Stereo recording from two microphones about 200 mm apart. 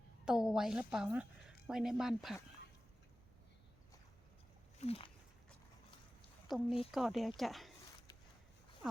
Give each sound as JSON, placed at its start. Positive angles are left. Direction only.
{"t": 0.3, "sound": "a woman's voice", "side_deg": -5}
{"t": 4.8, "sound": "speech", "side_deg": 30}
{"t": 6.5, "sound": "speech", "side_deg": 0}